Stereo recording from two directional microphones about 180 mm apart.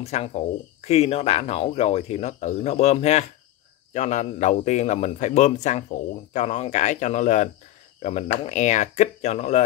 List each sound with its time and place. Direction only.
0.0 s speech: 35° left (ahead or behind)